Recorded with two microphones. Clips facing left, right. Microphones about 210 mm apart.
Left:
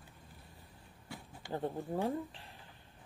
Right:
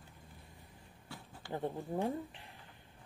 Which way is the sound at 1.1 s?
15° left (ahead or behind).